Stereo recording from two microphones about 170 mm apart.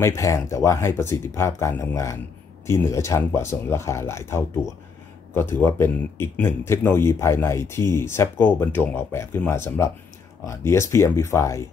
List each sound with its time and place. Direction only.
0.0 s speech: 15° left (ahead or behind)